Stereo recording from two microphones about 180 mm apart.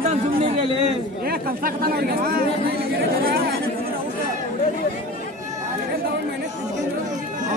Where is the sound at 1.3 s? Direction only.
55° right (ahead or behind).